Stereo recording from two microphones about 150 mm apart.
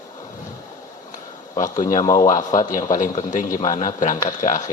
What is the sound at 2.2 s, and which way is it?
Speech, 55° left (ahead or behind).